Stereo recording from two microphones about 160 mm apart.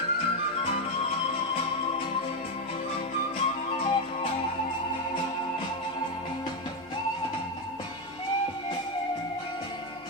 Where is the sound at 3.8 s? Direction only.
35° left (ahead or behind).